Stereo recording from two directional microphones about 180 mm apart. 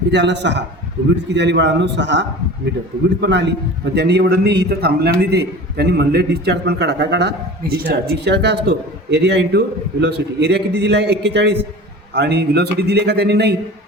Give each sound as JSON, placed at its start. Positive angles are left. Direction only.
{"t": 0.1, "sound": "a man's voice", "side_deg": -75}